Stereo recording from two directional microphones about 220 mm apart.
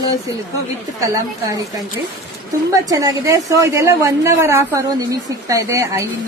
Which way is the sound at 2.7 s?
15° right (ahead or behind).